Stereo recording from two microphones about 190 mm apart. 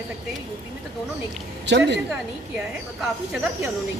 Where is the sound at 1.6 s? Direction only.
65° right (ahead or behind).